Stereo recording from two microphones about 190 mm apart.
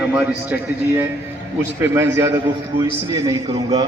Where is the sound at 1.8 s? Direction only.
15° right (ahead or behind).